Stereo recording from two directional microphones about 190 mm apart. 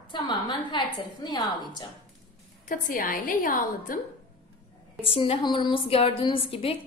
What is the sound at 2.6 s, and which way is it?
A woman's voice, 45° left (ahead or behind).